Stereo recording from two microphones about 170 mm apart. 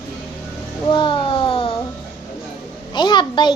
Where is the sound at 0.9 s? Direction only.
30° left (ahead or behind).